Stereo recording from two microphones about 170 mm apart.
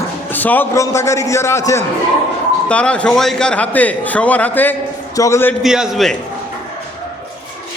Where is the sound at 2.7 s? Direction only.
5° left (ahead or behind).